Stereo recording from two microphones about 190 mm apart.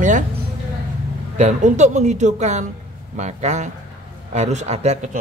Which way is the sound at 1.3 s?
40° right (ahead or behind).